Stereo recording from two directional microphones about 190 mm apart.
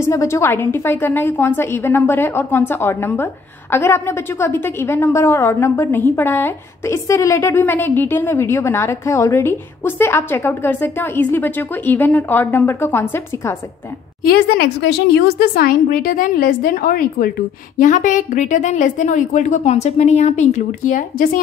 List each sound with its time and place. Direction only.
0.0 s a woman's voice: 15° left (ahead or behind)
14.2 s a woman's voice: 55° left (ahead or behind)